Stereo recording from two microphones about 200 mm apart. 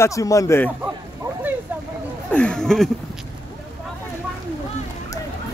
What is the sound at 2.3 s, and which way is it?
Speech, 5° left (ahead or behind).